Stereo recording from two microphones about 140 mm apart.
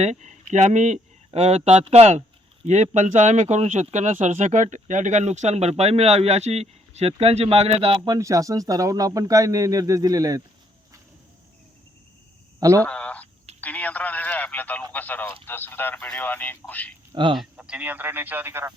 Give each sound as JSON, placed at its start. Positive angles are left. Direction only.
{"t": 0.0, "sound": "speech", "side_deg": -55}
{"t": 7.9, "sound": "speech", "side_deg": -30}
{"t": 12.5, "sound": "a sound", "side_deg": -20}
{"t": 12.8, "sound": "a sound", "side_deg": 10}
{"t": 13.6, "sound": "speech", "side_deg": 10}
{"t": 17.3, "sound": "a man's voice", "side_deg": -5}